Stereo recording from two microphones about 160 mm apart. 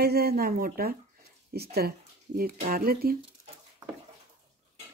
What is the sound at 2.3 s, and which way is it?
Speech, 65° right (ahead or behind).